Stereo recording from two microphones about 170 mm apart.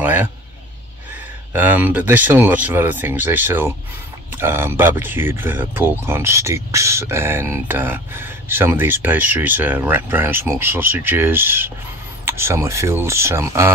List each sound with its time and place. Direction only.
0.0 s speech: 10° right (ahead or behind)
1.5 s speech: 10° right (ahead or behind)